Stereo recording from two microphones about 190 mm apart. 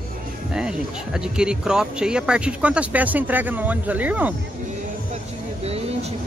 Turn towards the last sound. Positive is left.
turn(degrees=-35)  # may be behind; listen again after turning